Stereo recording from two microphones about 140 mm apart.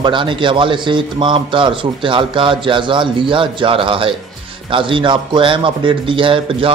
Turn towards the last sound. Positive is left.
turn(degrees=-40)  # may be behind; listen again after turning